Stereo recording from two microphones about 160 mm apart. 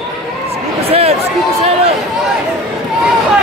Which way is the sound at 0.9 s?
40° right (ahead or behind).